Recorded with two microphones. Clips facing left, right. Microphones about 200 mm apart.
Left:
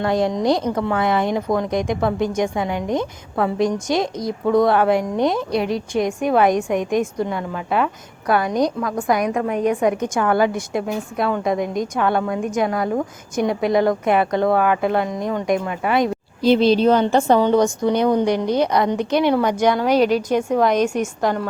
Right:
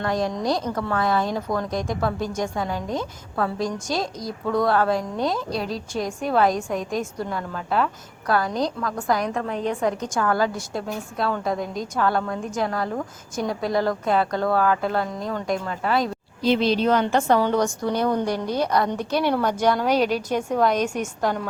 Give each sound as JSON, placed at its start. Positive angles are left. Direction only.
{"t": 0.0, "sound": "a woman's voice", "side_deg": 25}
{"t": 16.4, "sound": "a woman's voice", "side_deg": 35}